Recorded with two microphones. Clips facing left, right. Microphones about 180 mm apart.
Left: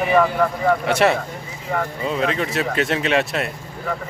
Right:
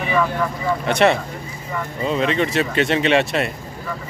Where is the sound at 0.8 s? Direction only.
5° left (ahead or behind).